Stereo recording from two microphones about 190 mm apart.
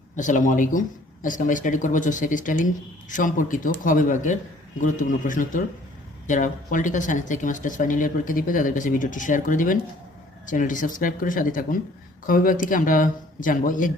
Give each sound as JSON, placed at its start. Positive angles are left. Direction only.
{"t": 0.2, "sound": "speech", "side_deg": 40}